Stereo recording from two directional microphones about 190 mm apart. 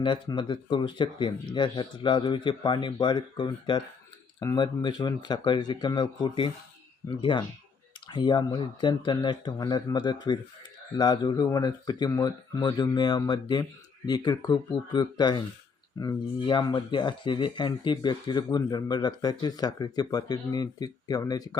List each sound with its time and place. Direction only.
0.0 s speech: 25° left (ahead or behind)